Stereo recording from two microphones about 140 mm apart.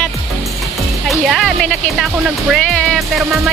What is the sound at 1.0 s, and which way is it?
Speech, centre (ahead or behind).